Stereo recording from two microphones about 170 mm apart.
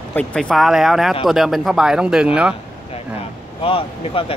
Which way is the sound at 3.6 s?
35° left (ahead or behind).